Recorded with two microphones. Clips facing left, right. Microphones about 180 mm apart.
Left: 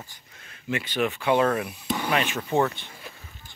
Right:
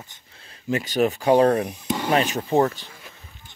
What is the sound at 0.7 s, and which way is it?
Speech, 40° right (ahead or behind).